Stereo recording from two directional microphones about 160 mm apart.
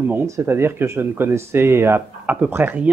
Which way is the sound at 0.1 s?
15° right (ahead or behind).